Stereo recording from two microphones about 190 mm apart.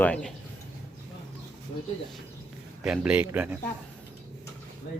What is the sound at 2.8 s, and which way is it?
Speech, 5° right (ahead or behind).